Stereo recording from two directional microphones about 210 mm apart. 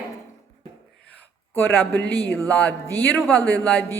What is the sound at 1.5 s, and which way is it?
A man's voice, 10° left (ahead or behind).